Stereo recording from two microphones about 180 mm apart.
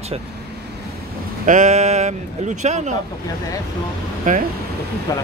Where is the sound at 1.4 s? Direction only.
45° right (ahead or behind).